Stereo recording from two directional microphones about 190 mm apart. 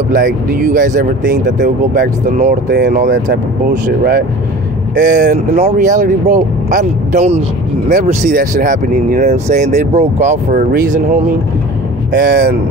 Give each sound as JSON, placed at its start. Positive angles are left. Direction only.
{"t": 0.1, "sound": "speech", "side_deg": -45}
{"t": 2.7, "sound": "speech", "side_deg": -50}
{"t": 12.1, "sound": "speech", "side_deg": -65}